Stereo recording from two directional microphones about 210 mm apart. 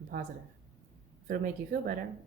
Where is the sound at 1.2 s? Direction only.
40° right (ahead or behind).